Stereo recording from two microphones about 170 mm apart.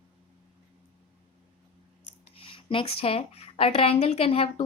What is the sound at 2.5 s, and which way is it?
A woman's voice, 30° left (ahead or behind).